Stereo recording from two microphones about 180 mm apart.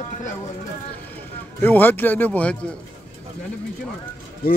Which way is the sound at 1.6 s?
10° left (ahead or behind).